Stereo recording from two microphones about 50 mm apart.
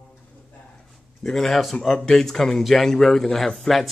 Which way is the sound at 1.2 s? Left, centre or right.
Centre.